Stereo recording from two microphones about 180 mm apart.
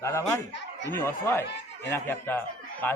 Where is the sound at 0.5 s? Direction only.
75° left (ahead or behind).